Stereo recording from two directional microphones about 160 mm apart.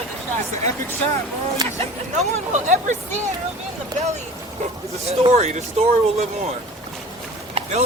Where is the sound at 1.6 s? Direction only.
25° right (ahead or behind).